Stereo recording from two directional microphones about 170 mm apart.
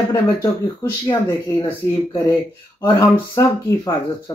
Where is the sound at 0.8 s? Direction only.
20° left (ahead or behind).